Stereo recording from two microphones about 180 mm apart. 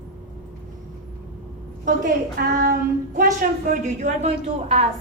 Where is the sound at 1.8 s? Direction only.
50° right (ahead or behind).